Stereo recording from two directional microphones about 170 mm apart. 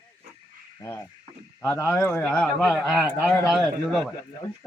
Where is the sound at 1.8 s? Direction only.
Centre (ahead or behind).